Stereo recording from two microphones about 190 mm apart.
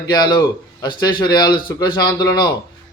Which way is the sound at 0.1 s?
20° left (ahead or behind).